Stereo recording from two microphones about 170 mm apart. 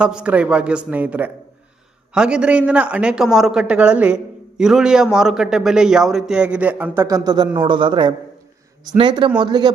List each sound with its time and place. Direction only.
0.0 s speech: 5° right (ahead or behind); by 9.7 s 25° right (ahead or behind)